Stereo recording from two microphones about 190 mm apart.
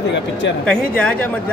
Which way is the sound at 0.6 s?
5° left (ahead or behind).